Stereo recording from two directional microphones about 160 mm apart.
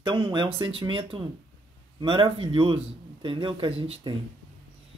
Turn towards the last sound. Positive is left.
turn(degrees=-30)  # may be behind; listen again after turning